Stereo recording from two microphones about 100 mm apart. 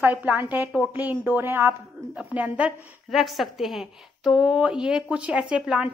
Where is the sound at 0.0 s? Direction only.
15° right (ahead or behind).